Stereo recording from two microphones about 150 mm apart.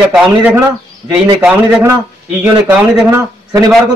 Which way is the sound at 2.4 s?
15° right (ahead or behind).